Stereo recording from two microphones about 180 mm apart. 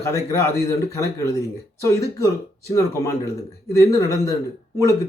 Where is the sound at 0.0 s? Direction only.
15° left (ahead or behind).